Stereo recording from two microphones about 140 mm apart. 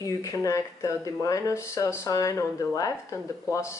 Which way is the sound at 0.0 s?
25° left (ahead or behind).